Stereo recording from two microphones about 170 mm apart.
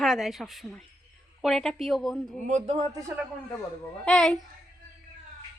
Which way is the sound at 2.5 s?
45° right (ahead or behind).